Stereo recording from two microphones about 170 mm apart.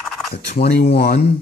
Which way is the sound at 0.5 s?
65° left (ahead or behind).